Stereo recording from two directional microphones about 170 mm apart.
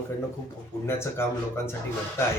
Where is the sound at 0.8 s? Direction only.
15° left (ahead or behind).